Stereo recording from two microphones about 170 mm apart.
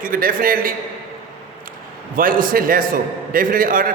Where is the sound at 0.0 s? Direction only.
55° right (ahead or behind).